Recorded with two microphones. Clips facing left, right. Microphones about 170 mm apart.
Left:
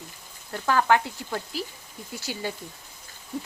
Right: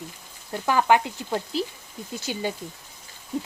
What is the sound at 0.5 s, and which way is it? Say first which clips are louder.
Speech: right 2 dB; 15° right (ahead or behind).